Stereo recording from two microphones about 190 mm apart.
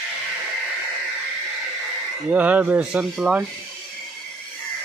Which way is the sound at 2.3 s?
10° right (ahead or behind).